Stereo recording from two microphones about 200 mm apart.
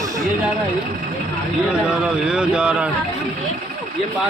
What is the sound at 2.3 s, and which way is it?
Speech, 5° right (ahead or behind).